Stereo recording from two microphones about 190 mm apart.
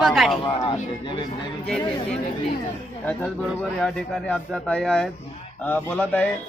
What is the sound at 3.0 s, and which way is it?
Speech, 5° left (ahead or behind).